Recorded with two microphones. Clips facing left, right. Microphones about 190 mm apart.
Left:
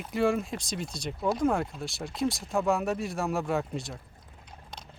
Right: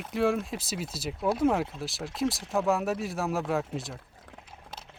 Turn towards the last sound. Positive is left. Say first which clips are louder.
# even
turn(degrees=0)  # may be behind; listen again after turning